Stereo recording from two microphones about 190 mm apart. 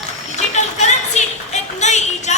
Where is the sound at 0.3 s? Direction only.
40° left (ahead or behind).